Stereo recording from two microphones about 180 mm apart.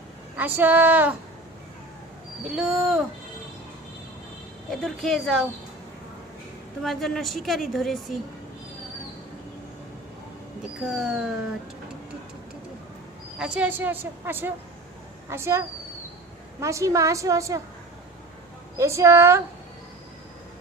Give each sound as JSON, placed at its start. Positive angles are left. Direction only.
{"t": 0.3, "sound": "a woman's voice", "side_deg": -10}
{"t": 2.4, "sound": "a woman's voice", "side_deg": 0}
{"t": 4.7, "sound": "a woman's voice", "side_deg": 0}
{"t": 6.8, "sound": "a woman's voice", "side_deg": 0}
{"t": 10.8, "sound": "a woman's voice", "side_deg": 0}
{"t": 13.4, "sound": "a woman's voice", "side_deg": -5}
{"t": 18.8, "sound": "a woman's voice", "side_deg": -15}